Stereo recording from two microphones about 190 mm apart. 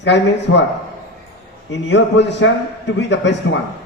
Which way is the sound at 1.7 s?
70° left (ahead or behind).